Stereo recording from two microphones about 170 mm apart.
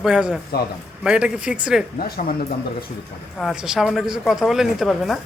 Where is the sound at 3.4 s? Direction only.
Centre (ahead or behind).